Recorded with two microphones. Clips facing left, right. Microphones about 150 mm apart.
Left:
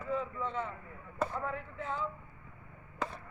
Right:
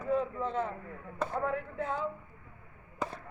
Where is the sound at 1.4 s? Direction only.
55° right (ahead or behind).